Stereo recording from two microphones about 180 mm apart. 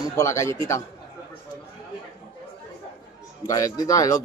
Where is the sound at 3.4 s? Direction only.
20° left (ahead or behind).